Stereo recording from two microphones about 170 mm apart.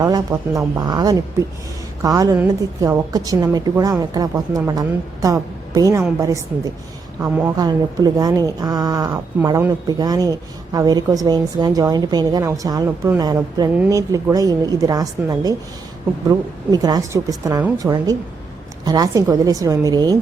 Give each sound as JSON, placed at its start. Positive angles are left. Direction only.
{"t": 0.0, "sound": "a woman's voice", "side_deg": -20}
{"t": 16.7, "sound": "speech", "side_deg": -25}